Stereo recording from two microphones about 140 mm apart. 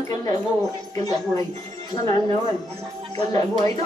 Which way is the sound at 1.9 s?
25° left (ahead or behind).